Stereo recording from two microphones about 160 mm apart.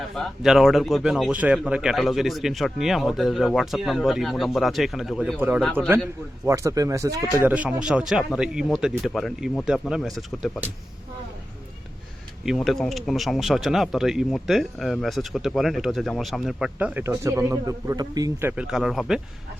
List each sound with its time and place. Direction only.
0.2 s speech: centre (ahead or behind)
6.5 s speech: 20° right (ahead or behind)
7.5 s speech: 10° right (ahead or behind)
12.5 s speech: centre (ahead or behind); by 18.6 s 15° right (ahead or behind)
18.7 s speech: centre (ahead or behind)